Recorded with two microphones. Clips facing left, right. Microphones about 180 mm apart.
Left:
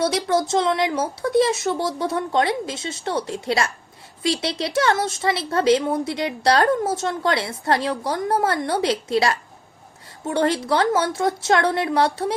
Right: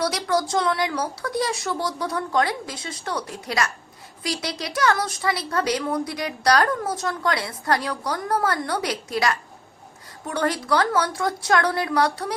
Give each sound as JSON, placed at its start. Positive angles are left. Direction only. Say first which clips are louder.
{"t": 0.0, "sound": "speech", "louder": "left 3 dB", "side_deg": 25}